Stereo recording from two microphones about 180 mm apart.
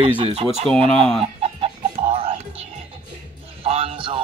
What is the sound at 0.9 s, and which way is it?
Speech, centre (ahead or behind).